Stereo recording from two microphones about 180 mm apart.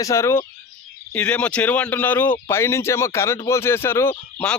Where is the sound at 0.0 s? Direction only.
15° left (ahead or behind).